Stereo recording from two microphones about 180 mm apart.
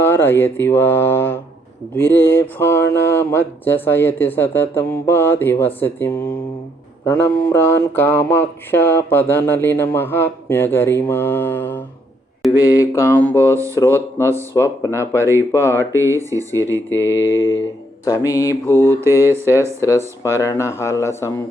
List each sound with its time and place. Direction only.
0.0 s speech: 10° left (ahead or behind)
15.2 s mantra: 15° right (ahead or behind)
15.5 s speech: 15° left (ahead or behind)
15.8 s mantra: 15° right (ahead or behind)
17.4 s speech: 15° left (ahead or behind)